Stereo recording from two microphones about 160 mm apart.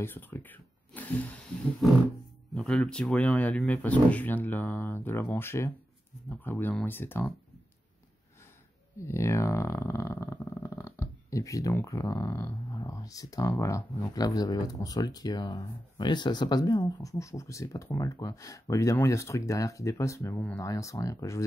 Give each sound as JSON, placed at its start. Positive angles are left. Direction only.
{"t": 0.0, "sound": "speech", "side_deg": 15}
{"t": 9.0, "sound": "speech", "side_deg": 20}